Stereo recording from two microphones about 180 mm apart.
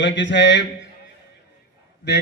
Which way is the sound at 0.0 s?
80° left.